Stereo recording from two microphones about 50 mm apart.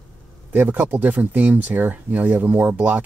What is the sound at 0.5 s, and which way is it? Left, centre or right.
Speech, right.